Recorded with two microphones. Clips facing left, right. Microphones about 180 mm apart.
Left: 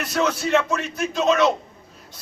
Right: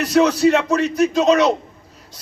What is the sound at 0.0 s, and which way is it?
A man's voice, 40° right (ahead or behind).